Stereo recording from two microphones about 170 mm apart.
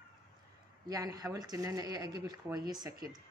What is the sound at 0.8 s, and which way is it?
Speech, 20° right (ahead or behind).